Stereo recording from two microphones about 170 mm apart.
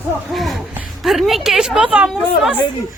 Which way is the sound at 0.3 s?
Centre (ahead or behind).